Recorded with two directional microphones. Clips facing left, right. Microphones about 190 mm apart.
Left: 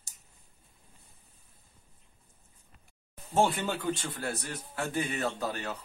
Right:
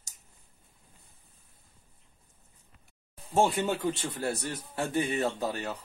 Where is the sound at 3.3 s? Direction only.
10° right (ahead or behind).